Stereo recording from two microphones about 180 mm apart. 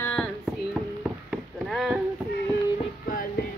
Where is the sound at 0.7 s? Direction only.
Centre (ahead or behind).